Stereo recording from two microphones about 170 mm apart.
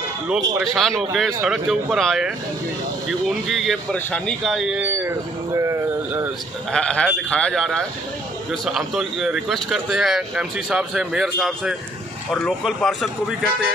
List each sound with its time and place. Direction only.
0.3 s speech: centre (ahead or behind)
6.7 s speech: 5° left (ahead or behind)